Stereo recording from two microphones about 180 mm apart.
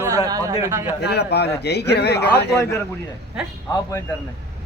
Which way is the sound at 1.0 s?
65° left (ahead or behind).